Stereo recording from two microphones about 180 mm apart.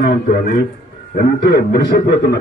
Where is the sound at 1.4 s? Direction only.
60° left (ahead or behind).